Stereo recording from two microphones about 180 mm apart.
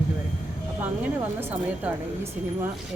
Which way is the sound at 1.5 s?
10° right (ahead or behind).